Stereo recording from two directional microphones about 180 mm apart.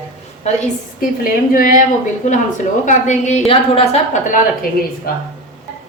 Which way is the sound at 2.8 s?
45° left (ahead or behind).